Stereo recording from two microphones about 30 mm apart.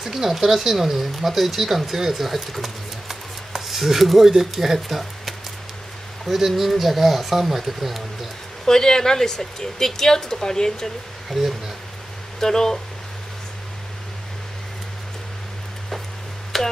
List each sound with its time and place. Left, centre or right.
0.0 s speech: centre
8.6 s speech: left
11.2 s speech: centre
12.4 s speech: centre
16.5 s finger snapping: centre